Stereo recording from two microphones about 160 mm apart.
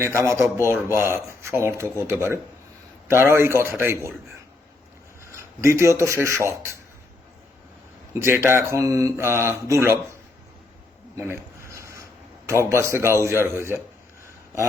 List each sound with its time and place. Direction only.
0.0 s speech: 15° right (ahead or behind)
5.3 s speech: 15° right (ahead or behind)
8.1 s speech: 15° right (ahead or behind)
11.1 s a sound: 15° right (ahead or behind)
12.5 s speech: 20° right (ahead or behind)